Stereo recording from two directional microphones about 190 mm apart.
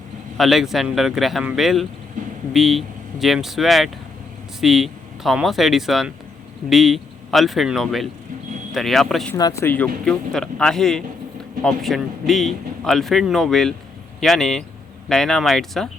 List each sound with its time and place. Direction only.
0.3 s speech: centre (ahead or behind)
9.3 s speech: 15° left (ahead or behind)